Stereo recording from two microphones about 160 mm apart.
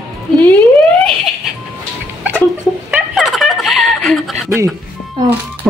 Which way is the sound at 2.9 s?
Centre (ahead or behind).